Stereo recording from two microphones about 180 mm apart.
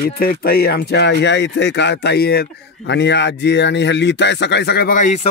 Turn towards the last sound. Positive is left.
turn(degrees=45)  # may be behind; listen again after turning